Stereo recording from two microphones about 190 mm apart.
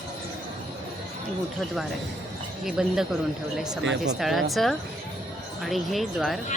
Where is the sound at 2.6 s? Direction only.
5° right (ahead or behind).